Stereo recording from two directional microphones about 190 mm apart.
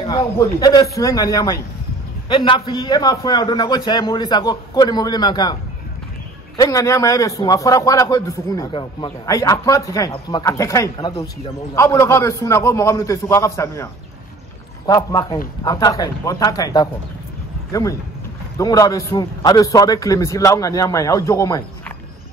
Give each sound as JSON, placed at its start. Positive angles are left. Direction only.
{"t": 0.0, "sound": "a man's voice", "side_deg": 20}
{"t": 14.9, "sound": "a man's voice", "side_deg": 15}
{"t": 18.6, "sound": "a man's voice", "side_deg": 20}